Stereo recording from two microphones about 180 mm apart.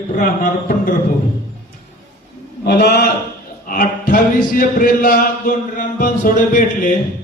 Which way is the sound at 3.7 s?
50° left (ahead or behind).